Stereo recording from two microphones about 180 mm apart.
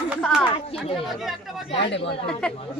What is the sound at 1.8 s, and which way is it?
Speech, 75° left (ahead or behind).